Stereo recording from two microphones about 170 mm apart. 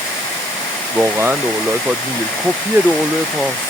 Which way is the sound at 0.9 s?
15° right (ahead or behind).